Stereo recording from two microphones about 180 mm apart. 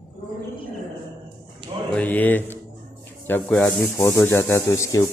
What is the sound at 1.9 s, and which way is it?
Speech, 10° left (ahead or behind).